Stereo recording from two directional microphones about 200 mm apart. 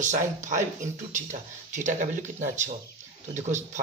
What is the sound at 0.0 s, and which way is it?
Speech, 40° right (ahead or behind).